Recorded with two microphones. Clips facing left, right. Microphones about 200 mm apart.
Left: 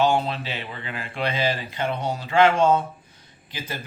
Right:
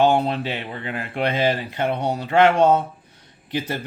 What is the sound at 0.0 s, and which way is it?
Speech, 55° right (ahead or behind).